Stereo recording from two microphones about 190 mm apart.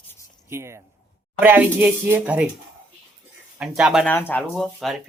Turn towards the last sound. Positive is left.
turn(degrees=5)  # may be behind; listen again after turning